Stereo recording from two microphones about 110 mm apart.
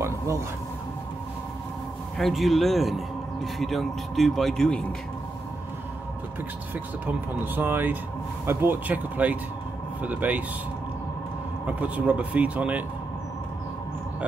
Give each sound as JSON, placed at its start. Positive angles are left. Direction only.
{"t": 2.1, "sound": "a man's voice", "side_deg": 0}
{"t": 7.5, "sound": "speech", "side_deg": -15}
{"t": 11.6, "sound": "speech", "side_deg": -15}